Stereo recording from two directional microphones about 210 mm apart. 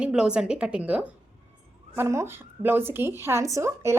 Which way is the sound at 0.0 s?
5° right (ahead or behind).